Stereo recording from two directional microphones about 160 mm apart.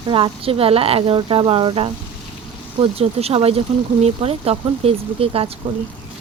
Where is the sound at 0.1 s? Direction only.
35° right (ahead or behind).